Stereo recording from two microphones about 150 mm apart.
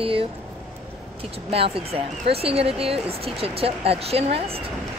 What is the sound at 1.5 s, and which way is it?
Speech, 40° right (ahead or behind).